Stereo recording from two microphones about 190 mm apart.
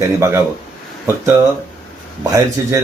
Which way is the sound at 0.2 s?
15° right (ahead or behind).